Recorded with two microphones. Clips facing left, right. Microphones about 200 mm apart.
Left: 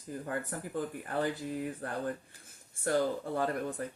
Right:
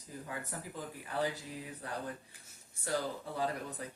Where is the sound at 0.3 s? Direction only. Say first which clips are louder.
Left 6 dB; 55° left (ahead or behind).